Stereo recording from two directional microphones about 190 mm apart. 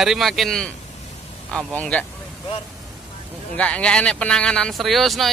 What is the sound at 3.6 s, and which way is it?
Speech, 5° left (ahead or behind).